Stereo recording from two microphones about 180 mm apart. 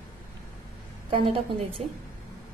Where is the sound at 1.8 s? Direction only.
35° right (ahead or behind).